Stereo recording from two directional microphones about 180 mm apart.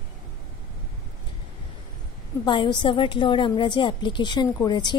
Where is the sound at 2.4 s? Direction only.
25° left (ahead or behind).